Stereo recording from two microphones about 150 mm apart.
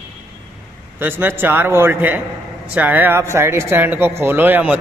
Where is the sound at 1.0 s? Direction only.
15° right (ahead or behind).